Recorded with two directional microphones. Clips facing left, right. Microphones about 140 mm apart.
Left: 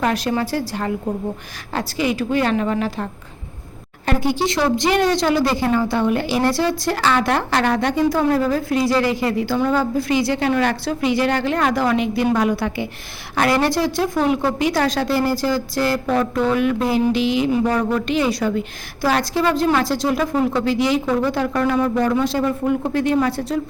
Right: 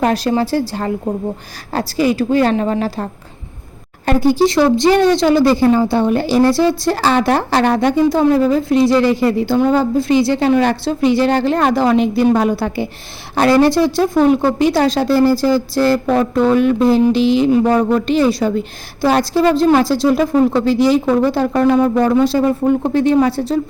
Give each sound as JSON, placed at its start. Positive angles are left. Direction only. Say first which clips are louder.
{"t": 0.0, "sound": "a woman's voice", "louder": "right 5 dB", "side_deg": -30}